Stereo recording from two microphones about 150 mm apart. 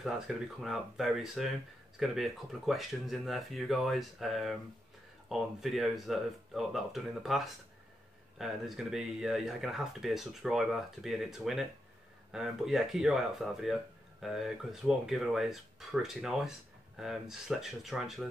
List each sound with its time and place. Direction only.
0.0 s speech: centre (ahead or behind)